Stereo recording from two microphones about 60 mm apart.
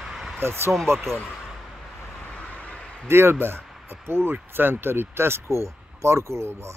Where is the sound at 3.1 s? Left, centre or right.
Right.